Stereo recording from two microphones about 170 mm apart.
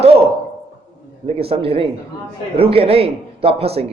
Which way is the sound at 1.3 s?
35° right (ahead or behind).